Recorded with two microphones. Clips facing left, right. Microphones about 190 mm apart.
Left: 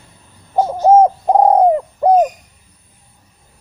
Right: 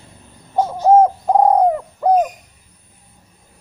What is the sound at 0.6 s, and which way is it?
Bird, 20° left (ahead or behind).